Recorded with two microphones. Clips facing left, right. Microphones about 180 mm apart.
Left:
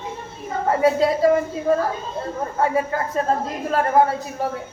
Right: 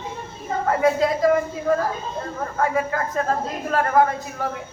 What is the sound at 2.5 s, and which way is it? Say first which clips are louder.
A woman's voice: left 1 dB; 30° left (ahead or behind).